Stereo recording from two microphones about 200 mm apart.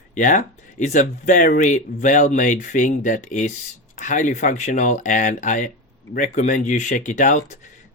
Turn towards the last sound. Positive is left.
turn(degrees=35)  # may be behind; listen again after turning